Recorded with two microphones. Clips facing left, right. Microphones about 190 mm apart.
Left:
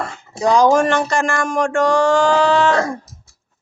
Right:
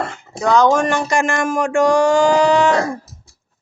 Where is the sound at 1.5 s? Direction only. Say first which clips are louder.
Right 2 dB; 5° right (ahead or behind).